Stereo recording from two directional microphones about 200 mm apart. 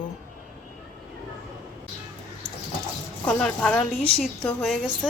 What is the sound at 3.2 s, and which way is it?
A woman's voice, 5° left (ahead or behind).